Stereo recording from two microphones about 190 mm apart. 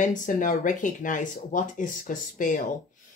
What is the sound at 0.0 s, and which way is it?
Speech, 45° left (ahead or behind).